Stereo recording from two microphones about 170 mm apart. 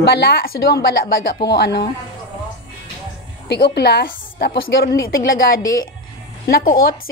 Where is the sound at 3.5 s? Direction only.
75° left (ahead or behind).